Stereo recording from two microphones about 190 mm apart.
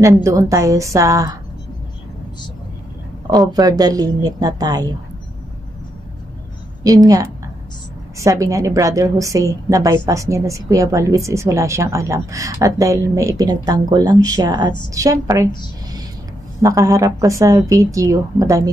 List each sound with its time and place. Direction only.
0.0 s a woman's voice: 15° right (ahead or behind)
3.3 s speech: 20° right (ahead or behind)
6.8 s a woman's voice: 20° right (ahead or behind)